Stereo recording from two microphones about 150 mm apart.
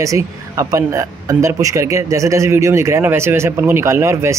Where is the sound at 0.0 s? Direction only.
20° right (ahead or behind).